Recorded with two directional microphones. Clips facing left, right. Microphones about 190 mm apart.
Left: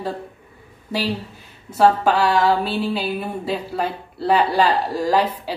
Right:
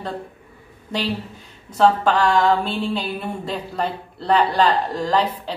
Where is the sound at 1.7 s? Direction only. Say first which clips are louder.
Left 1 dB; 10° left (ahead or behind).